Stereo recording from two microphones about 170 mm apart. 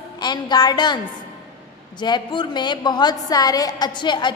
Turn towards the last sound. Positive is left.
turn(degrees=25)  # may be behind; listen again after turning